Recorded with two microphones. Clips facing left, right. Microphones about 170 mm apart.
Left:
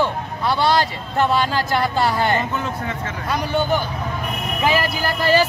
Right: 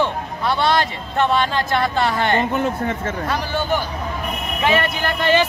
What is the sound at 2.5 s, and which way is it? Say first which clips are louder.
Speech: right 4 dB; 50° right (ahead or behind).